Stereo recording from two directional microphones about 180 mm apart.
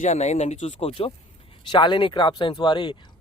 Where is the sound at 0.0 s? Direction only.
40° left (ahead or behind).